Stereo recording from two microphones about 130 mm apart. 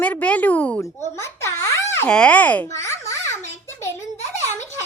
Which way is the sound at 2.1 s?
10° left (ahead or behind).